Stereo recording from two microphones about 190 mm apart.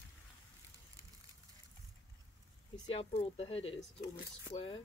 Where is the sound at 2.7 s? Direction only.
35° left (ahead or behind).